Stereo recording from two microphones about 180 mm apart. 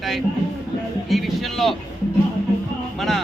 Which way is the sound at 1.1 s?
Centre (ahead or behind).